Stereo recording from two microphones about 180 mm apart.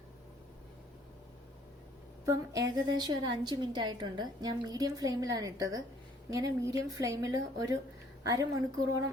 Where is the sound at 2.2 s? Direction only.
20° right (ahead or behind).